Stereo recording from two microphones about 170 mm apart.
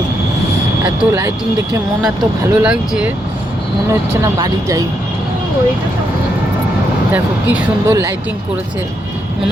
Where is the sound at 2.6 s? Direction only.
5° right (ahead or behind).